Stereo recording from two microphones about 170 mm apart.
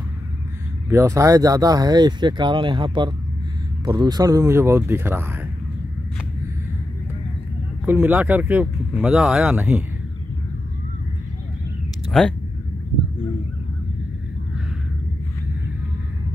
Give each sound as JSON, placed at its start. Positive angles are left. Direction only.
{"t": 0.8, "sound": "speech", "side_deg": -15}
{"t": 7.8, "sound": "speech", "side_deg": -10}
{"t": 12.1, "sound": "speech", "side_deg": 5}